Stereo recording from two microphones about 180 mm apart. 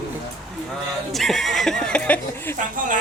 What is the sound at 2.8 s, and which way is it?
Speech, 45° right (ahead or behind).